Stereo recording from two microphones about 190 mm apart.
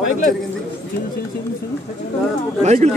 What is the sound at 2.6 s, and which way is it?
Speech, 35° right (ahead or behind).